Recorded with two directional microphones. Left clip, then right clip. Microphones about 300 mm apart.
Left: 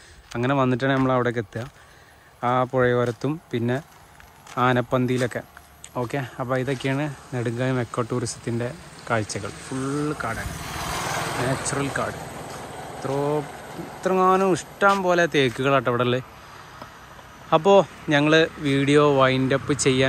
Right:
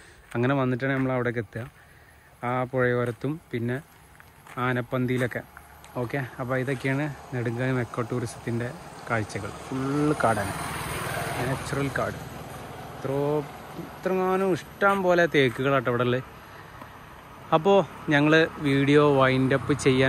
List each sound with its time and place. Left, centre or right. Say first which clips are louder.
0.3 s speech: left 3 dB; centre
9.4 s speech: left 2 dB; right
10.2 s speech: right 5 dB; centre
11.1 s vehicle: left 3 dB; left
11.7 s speech: left 2 dB; centre
12.2 s vehicle: left 5 dB; left
13.0 s speech: left 2 dB; centre
17.5 s speech: left 4 dB; centre